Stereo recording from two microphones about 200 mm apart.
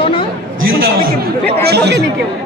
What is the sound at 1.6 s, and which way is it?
Speech, 55° right (ahead or behind).